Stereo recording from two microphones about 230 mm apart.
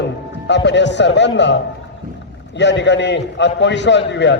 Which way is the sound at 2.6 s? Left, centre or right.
Left.